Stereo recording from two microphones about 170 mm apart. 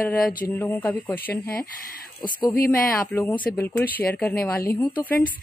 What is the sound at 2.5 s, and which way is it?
Speech, 60° left (ahead or behind).